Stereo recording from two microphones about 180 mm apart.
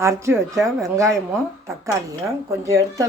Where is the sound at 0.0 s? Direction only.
15° right (ahead or behind).